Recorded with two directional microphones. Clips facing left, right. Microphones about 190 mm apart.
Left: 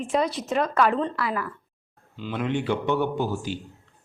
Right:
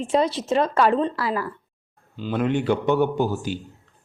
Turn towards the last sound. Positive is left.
turn(degrees=-45)  # may be behind; listen again after turning